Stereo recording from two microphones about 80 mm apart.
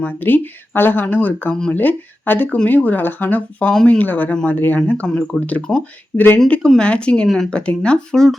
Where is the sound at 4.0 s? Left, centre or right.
Left.